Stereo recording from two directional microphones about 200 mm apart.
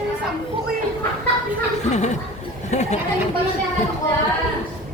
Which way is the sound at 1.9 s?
35° left (ahead or behind).